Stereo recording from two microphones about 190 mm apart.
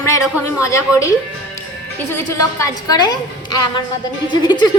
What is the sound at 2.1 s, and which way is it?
A woman's voice, 15° left (ahead or behind).